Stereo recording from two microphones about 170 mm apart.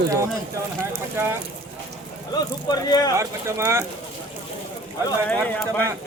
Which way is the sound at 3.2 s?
15° right (ahead or behind).